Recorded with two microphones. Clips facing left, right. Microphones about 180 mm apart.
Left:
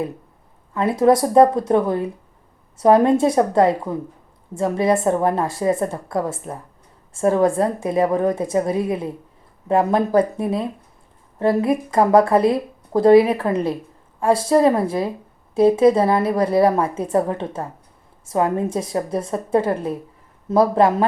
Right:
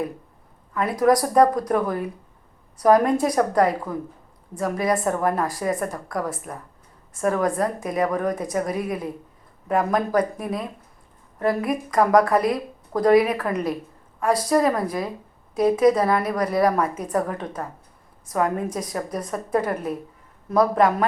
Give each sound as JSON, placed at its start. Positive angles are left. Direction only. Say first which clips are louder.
{"t": 0.7, "sound": "speech", "louder": "left 3 dB", "side_deg": 25}